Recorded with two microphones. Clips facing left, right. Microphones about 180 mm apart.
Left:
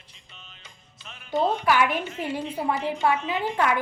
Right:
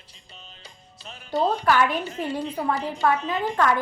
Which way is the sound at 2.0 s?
35° right (ahead or behind).